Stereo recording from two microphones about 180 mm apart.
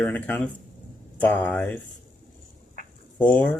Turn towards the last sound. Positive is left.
turn(degrees=10)  # may be behind; listen again after turning